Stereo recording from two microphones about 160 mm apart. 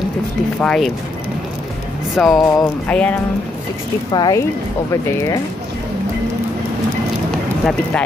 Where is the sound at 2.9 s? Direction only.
10° left (ahead or behind).